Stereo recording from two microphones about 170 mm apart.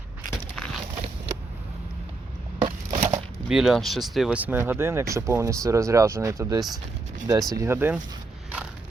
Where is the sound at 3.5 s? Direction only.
Centre (ahead or behind).